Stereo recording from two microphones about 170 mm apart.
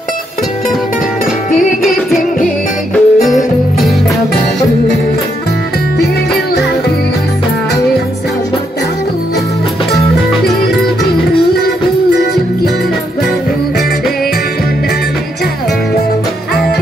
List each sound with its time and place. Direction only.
2.1 s music: centre (ahead or behind)